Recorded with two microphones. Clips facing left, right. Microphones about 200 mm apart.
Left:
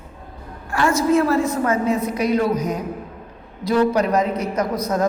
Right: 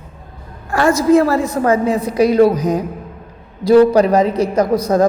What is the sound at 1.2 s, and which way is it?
A woman's voice, 35° right (ahead or behind).